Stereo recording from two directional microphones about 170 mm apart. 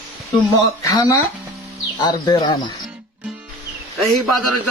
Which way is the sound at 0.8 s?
20° left (ahead or behind).